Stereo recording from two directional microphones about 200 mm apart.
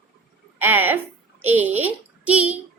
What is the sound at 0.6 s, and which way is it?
A child's voice, 10° right (ahead or behind).